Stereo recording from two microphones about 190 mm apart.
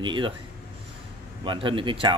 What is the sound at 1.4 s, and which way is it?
Speech, 25° right (ahead or behind).